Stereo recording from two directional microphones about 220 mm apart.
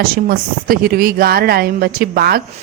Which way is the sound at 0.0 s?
40° right (ahead or behind).